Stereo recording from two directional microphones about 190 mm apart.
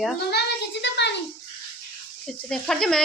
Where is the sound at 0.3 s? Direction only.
60° left (ahead or behind).